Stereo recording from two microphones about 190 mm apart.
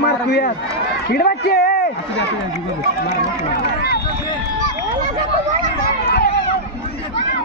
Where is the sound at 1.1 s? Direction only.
55° left (ahead or behind).